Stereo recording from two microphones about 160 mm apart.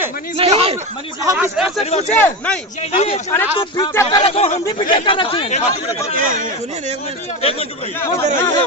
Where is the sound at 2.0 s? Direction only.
10° left (ahead or behind).